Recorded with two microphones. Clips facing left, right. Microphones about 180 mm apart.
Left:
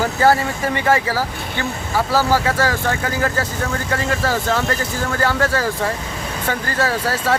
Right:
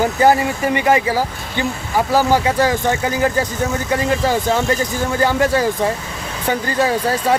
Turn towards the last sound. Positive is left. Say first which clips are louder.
# right 3 dB
turn(degrees=-15)  # may be behind; listen again after turning